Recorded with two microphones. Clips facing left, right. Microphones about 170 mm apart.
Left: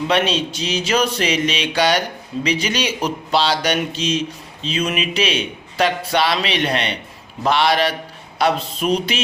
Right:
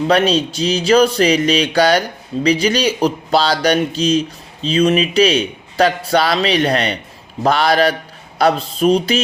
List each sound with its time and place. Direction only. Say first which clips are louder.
0.1 s speech: right 5 dB; 35° right (ahead or behind)